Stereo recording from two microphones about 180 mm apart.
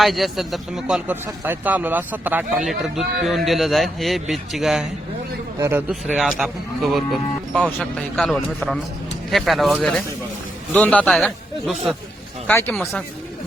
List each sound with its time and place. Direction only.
0.0 s a man's voice: centre (ahead or behind)
5.5 s a man's voice: 15° right (ahead or behind)
6.1 s a man's voice: centre (ahead or behind)